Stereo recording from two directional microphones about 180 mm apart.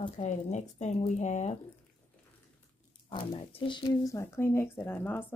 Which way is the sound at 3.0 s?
25° left (ahead or behind).